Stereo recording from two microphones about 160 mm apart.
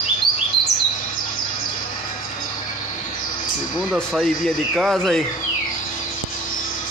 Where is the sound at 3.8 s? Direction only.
5° left (ahead or behind).